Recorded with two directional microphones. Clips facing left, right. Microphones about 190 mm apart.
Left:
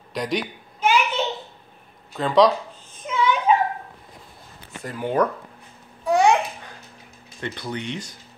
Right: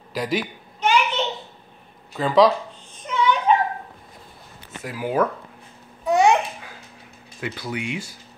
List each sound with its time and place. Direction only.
0.1 s babbling: 5° right (ahead or behind)
2.1 s speech: centre (ahead or behind)
3.1 s a sound: 5° left (ahead or behind)
4.8 s speech: 5° right (ahead or behind)
6.0 s babbling: centre (ahead or behind)
7.3 s speech: 5° right (ahead or behind)